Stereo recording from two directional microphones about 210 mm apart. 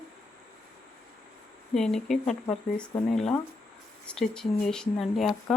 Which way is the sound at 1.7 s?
Centre (ahead or behind).